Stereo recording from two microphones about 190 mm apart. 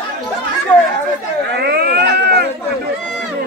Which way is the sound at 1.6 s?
55° right (ahead or behind).